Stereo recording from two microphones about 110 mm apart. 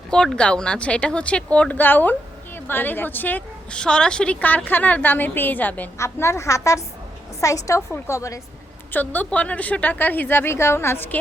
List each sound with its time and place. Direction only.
0.1 s a woman's voice: 5° left (ahead or behind)
6.0 s a woman's voice: 25° left (ahead or behind)
8.9 s a woman's voice: 15° left (ahead or behind)